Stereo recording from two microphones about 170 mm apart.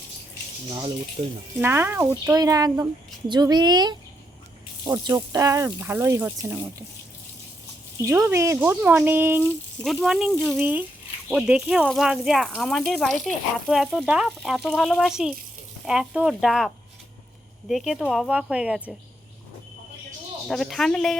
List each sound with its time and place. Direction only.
0.7 s speech: 30° right (ahead or behind)
1.6 s speech: 15° right (ahead or behind)
8.0 s speech: 15° right (ahead or behind)
9.8 s speech: centre (ahead or behind)
20.5 s speech: centre (ahead or behind)